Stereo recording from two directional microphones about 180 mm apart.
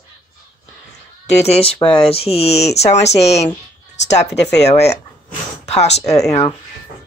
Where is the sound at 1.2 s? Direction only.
35° left (ahead or behind).